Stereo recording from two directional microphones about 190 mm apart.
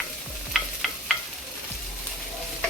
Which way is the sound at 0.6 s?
Centre (ahead or behind).